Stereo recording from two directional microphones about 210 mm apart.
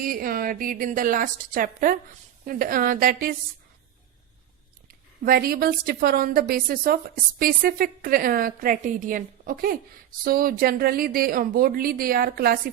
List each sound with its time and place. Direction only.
0.0 s a woman's voice: 45° right (ahead or behind)
5.2 s a woman's voice: 45° right (ahead or behind)